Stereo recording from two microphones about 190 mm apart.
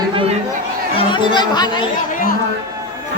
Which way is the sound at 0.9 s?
25° left (ahead or behind).